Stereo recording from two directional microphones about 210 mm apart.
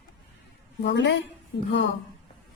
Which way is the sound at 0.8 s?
55° left (ahead or behind).